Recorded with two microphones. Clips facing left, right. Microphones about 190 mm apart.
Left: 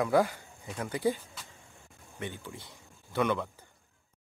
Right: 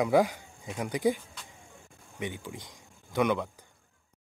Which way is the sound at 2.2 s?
15° right (ahead or behind).